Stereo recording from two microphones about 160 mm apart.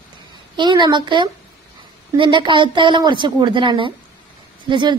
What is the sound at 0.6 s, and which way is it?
A woman's voice, 30° right (ahead or behind).